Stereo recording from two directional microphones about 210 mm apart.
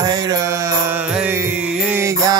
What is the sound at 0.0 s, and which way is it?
Music, 20° right (ahead or behind).